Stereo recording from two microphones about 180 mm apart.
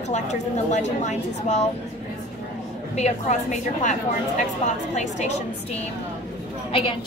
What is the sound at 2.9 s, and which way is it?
A woman's voice, 40° left (ahead or behind).